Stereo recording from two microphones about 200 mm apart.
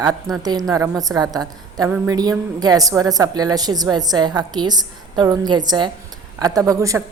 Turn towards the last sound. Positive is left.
turn(degrees=-15)  # may be behind; listen again after turning